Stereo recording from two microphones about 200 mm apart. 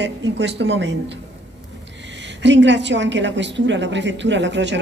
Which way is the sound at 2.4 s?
65° right (ahead or behind).